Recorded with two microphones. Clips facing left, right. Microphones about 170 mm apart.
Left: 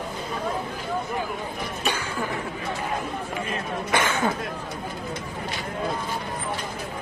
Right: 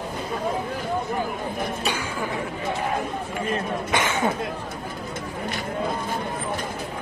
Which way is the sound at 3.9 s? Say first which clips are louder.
Even; 20° right (ahead or behind).